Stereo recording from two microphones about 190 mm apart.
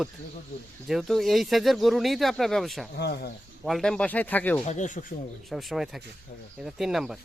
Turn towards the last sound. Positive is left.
turn(degrees=0)  # may be behind; listen again after turning